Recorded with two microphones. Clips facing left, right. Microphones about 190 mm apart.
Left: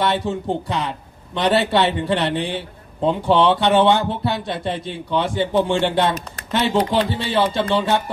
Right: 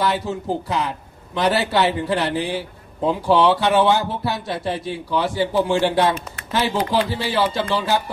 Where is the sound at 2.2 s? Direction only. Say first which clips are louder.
Even; centre (ahead or behind).